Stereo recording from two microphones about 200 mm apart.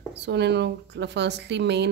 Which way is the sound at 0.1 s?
60° right (ahead or behind).